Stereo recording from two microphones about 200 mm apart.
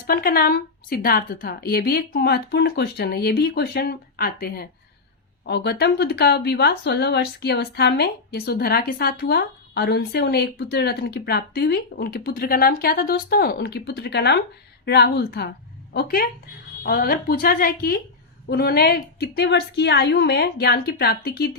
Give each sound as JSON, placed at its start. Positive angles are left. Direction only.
{"t": 0.1, "sound": "a woman's voice", "side_deg": 45}